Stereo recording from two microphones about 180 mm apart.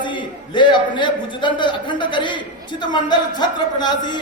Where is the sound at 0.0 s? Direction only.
25° left (ahead or behind).